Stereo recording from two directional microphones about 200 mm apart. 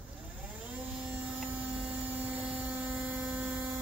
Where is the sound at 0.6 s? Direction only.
5° right (ahead or behind).